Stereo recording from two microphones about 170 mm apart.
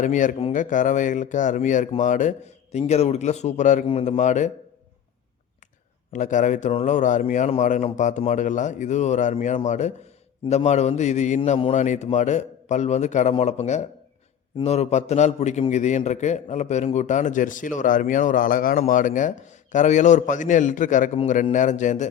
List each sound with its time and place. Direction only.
0.0 s a man's voice: 50° left (ahead or behind)
3.8 s a man's voice: 35° left (ahead or behind)
6.1 s a man's voice: 50° left (ahead or behind)